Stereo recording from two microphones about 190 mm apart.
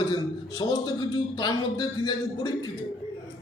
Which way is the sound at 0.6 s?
20° left (ahead or behind).